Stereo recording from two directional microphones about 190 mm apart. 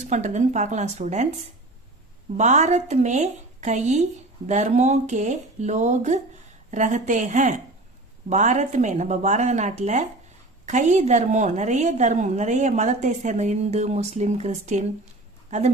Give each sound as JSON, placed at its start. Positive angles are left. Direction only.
{"t": 0.0, "sound": "a woman's voice", "side_deg": -40}
{"t": 2.4, "sound": "a woman's voice", "side_deg": -40}